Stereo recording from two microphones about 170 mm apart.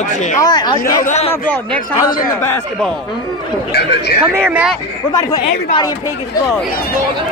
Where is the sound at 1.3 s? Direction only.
10° left (ahead or behind).